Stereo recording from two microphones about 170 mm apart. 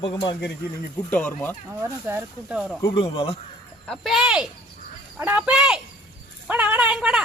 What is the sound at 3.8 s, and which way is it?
Speech, centre (ahead or behind).